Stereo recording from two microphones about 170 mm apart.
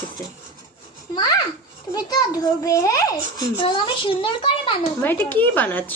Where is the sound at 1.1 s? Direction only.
25° left (ahead or behind).